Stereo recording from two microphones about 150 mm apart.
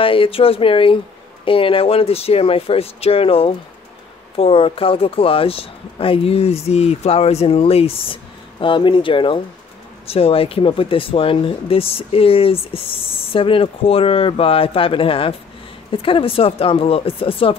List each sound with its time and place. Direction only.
0.0 s speech: 35° left (ahead or behind)